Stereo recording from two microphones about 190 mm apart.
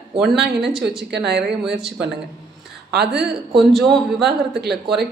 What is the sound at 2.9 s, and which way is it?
Speech, 60° right (ahead or behind).